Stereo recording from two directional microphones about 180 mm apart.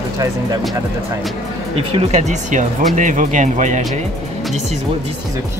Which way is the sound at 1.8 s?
30° right (ahead or behind).